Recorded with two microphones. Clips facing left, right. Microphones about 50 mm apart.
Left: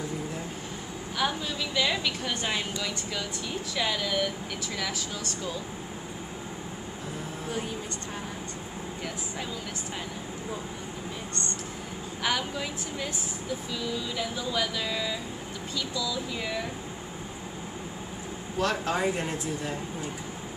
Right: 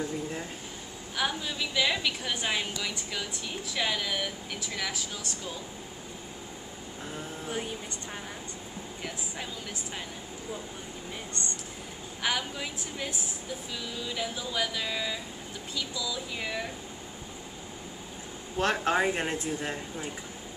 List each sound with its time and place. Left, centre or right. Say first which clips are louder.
1.1 s a woman's voice: left 2 dB; centre
12.2 s a woman's voice: left 2 dB; centre
14.1 s speech: right 1 dB; centre
18.6 s speech: right 1 dB; right